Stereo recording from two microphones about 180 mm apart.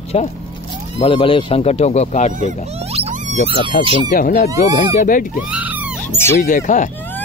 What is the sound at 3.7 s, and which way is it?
Speech, 55° left (ahead or behind).